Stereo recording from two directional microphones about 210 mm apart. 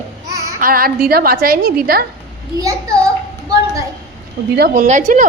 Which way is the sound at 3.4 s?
15° right (ahead or behind).